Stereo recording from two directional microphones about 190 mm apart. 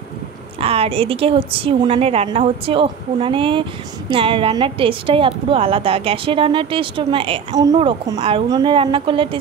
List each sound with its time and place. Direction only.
0.6 s a woman's voice: 30° right (ahead or behind)